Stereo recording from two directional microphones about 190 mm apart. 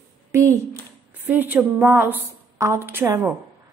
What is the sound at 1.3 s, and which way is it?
A woman's voice, 10° right (ahead or behind).